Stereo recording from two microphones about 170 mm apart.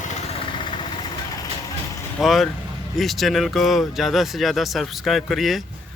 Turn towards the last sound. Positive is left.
turn(degrees=0)  # may be behind; listen again after turning